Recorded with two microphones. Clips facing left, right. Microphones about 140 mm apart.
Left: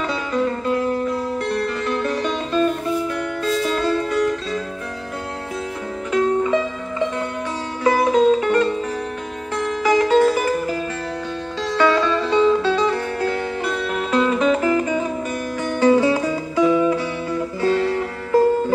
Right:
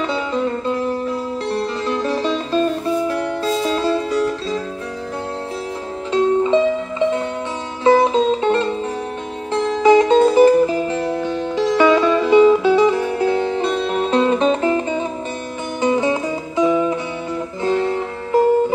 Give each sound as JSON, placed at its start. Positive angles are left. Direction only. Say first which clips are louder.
{"t": 1.5, "sound": "music", "louder": "right 3 dB", "side_deg": -30}
{"t": 6.1, "sound": "music", "louder": "right 3 dB", "side_deg": -25}
{"t": 7.8, "sound": "music", "louder": "right 2 dB", "side_deg": -25}